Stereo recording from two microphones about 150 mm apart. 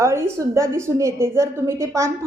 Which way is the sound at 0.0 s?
20° right (ahead or behind).